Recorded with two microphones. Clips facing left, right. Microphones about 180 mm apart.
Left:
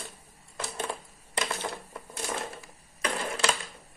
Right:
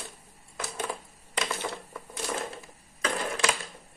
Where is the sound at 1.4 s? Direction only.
15° left (ahead or behind).